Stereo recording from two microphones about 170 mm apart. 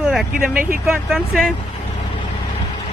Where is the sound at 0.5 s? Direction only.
55° right (ahead or behind).